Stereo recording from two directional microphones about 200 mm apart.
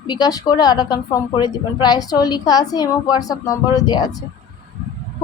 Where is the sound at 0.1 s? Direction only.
20° left (ahead or behind).